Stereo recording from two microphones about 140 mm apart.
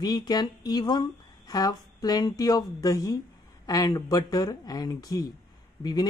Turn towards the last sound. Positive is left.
turn(degrees=30)  # may be behind; listen again after turning